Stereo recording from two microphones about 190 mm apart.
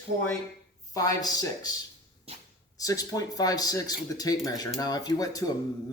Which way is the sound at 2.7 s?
20° left (ahead or behind).